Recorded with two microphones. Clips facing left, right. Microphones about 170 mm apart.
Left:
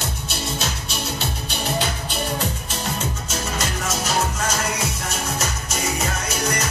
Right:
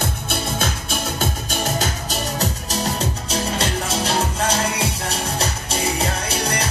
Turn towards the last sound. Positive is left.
turn(degrees=-30)  # may be behind; listen again after turning